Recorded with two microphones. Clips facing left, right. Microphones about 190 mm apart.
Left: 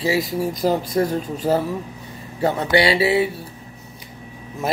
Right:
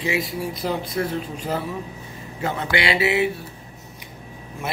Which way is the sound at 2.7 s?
35° left (ahead or behind).